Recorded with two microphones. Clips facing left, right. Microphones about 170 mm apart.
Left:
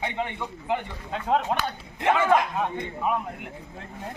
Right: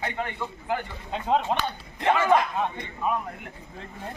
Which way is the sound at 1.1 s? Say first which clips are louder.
Even; centre (ahead or behind).